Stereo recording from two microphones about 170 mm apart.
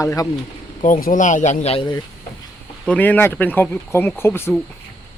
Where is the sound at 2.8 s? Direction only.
10° left (ahead or behind).